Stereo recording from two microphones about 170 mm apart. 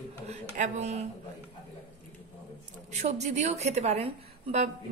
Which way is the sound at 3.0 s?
40° right (ahead or behind).